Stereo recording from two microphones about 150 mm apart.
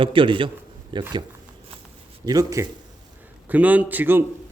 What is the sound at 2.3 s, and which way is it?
Speech, 25° right (ahead or behind).